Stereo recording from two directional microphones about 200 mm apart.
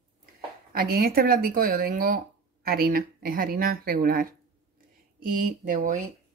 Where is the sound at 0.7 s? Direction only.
50° right (ahead or behind).